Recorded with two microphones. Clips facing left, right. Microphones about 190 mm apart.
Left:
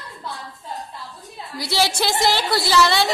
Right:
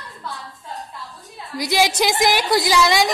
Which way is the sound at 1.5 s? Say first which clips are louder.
Right 3 dB; 15° right (ahead or behind).